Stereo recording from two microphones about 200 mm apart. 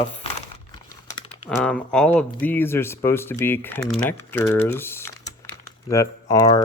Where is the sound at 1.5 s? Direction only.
5° left (ahead or behind).